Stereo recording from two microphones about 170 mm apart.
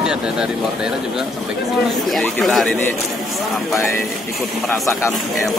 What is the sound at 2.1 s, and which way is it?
Speech, centre (ahead or behind).